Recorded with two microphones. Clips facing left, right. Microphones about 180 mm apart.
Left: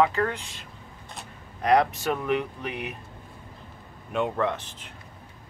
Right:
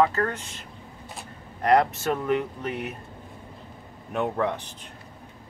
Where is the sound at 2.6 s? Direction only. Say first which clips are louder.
Right 2 dB; 15° left (ahead or behind).